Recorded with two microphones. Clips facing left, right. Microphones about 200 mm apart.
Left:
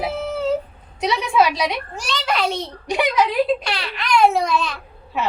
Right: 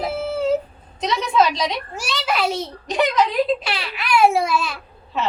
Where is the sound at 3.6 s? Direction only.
5° right (ahead or behind).